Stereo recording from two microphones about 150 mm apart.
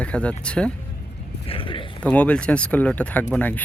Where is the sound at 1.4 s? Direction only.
35° left (ahead or behind).